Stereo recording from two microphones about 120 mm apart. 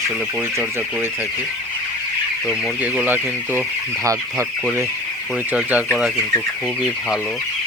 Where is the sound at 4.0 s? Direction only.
25° right (ahead or behind).